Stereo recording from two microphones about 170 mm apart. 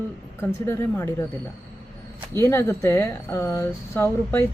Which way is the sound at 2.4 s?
15° left (ahead or behind).